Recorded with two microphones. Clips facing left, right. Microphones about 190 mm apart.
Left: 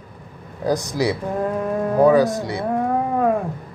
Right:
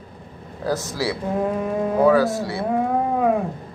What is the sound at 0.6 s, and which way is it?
Speech, 15° left (ahead or behind).